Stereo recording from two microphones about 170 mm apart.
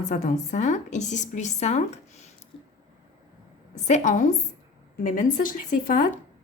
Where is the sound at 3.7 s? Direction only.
45° left (ahead or behind).